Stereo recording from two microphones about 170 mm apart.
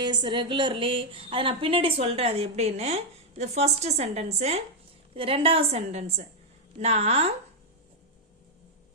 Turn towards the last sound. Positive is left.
turn(degrees=-40)  # may be behind; listen again after turning